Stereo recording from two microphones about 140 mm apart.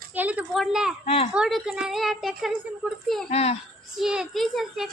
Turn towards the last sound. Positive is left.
turn(degrees=0)  # may be behind; listen again after turning